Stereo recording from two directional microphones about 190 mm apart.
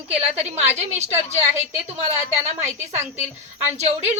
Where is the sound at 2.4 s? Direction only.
35° right (ahead or behind).